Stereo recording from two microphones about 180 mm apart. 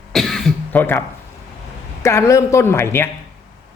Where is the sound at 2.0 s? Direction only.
15° left (ahead or behind).